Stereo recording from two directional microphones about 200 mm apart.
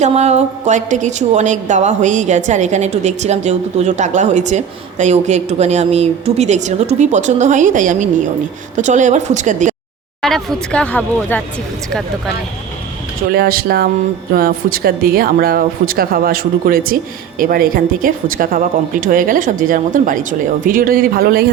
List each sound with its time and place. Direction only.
0.0 s a woman's voice: 35° right (ahead or behind)
10.2 s speech: centre (ahead or behind)
13.3 s speech: 50° right (ahead or behind)